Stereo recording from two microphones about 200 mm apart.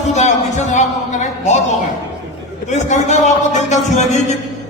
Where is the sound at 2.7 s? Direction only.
35° left (ahead or behind).